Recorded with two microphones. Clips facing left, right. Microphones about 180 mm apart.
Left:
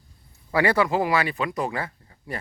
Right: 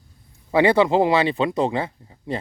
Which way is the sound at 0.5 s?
25° right (ahead or behind).